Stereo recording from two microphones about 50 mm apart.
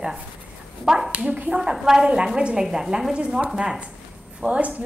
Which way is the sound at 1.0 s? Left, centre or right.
Right.